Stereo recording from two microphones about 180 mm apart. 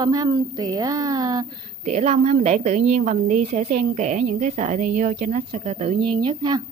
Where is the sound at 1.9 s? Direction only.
40° right (ahead or behind).